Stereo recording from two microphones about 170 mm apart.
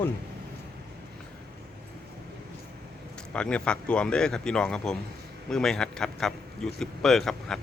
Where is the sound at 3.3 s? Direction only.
5° left (ahead or behind).